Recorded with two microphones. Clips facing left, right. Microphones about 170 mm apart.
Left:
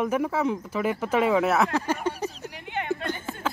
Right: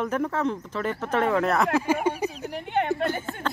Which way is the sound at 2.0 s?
10° right (ahead or behind).